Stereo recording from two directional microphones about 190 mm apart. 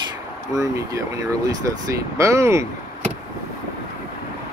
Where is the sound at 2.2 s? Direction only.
15° right (ahead or behind).